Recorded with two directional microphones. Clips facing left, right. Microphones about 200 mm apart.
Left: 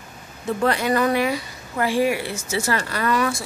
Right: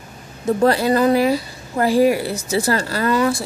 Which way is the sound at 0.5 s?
35° right (ahead or behind).